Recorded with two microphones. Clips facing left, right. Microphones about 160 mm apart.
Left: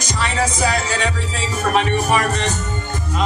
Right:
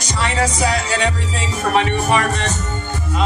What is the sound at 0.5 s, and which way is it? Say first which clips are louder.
Music: right 1 dB; 10° right (ahead or behind).